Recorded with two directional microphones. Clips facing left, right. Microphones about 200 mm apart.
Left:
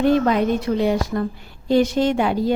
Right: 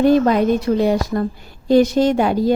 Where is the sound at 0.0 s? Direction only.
40° right (ahead or behind).